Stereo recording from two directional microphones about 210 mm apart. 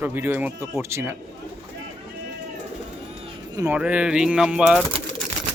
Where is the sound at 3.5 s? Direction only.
10° right (ahead or behind).